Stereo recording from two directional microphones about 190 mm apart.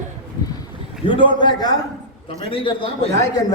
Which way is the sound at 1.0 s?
25° left (ahead or behind).